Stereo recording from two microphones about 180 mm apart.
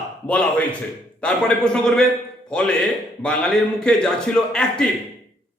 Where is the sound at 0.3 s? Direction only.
5° left (ahead or behind).